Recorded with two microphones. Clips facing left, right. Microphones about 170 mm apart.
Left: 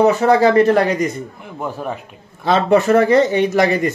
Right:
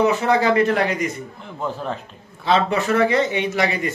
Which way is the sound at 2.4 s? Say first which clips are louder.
Left 5 dB; 45° left (ahead or behind).